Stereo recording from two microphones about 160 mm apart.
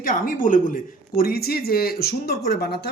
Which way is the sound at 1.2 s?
70° left (ahead or behind).